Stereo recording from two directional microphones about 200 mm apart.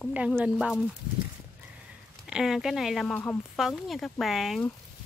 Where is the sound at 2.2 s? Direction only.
Centre (ahead or behind).